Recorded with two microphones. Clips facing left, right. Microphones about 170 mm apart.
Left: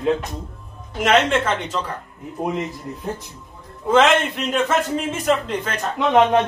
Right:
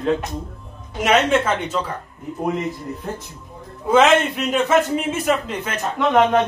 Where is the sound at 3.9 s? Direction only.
10° right (ahead or behind).